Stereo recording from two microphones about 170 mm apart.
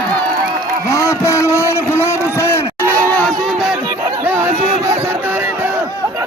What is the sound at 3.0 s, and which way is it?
Chatter, 5° left (ahead or behind).